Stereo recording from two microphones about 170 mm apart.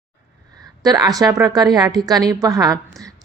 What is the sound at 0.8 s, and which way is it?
A woman's voice, 20° right (ahead or behind).